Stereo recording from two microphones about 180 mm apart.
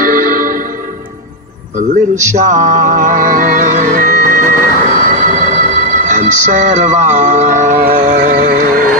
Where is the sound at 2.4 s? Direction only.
40° right (ahead or behind).